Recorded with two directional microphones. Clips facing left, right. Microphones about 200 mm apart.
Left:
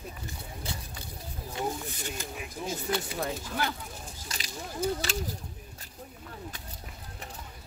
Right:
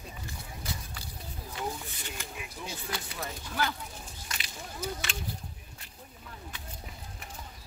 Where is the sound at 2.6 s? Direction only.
40° left (ahead or behind).